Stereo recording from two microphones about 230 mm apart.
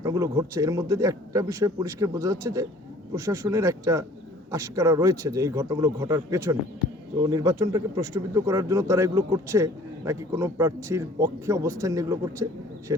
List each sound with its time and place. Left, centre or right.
0.0 s speech: centre